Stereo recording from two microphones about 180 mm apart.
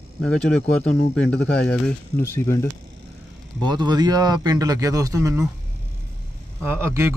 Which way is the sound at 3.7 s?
25° right (ahead or behind).